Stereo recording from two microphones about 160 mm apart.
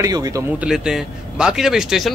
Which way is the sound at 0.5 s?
5° right (ahead or behind).